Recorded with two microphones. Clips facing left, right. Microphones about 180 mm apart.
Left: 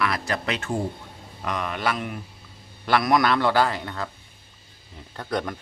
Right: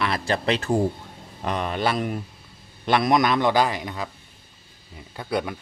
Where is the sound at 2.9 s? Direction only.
20° right (ahead or behind).